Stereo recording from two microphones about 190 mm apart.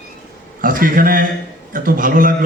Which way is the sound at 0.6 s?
45° right (ahead or behind).